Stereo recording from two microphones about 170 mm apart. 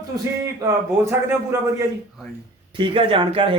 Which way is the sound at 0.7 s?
15° right (ahead or behind).